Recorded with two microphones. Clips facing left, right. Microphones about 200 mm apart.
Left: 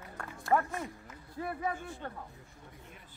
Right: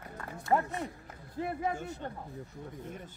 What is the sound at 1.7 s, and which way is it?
Speech, 40° right (ahead or behind).